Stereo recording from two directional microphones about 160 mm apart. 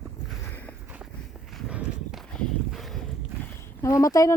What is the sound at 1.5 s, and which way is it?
Walk, 5° right (ahead or behind).